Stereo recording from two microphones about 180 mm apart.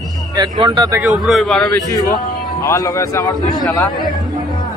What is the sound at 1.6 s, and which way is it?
A man's voice, 20° left (ahead or behind).